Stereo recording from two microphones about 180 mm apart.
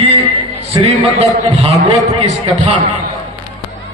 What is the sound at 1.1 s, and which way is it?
Speech, 35° right (ahead or behind).